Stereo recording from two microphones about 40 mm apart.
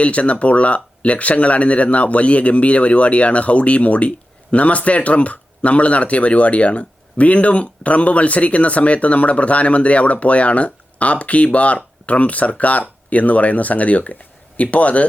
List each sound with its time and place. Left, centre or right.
0.0 s speech: left